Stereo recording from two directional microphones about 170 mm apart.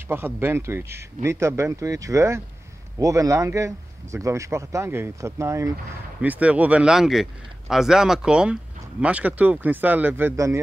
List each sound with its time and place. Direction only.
0.1 s a man's voice: 15° right (ahead or behind)